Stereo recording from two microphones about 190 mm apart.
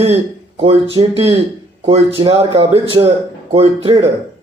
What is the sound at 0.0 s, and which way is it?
A man's voice, 35° right (ahead or behind).